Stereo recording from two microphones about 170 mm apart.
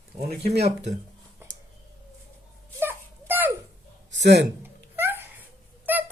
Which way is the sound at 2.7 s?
10° right (ahead or behind).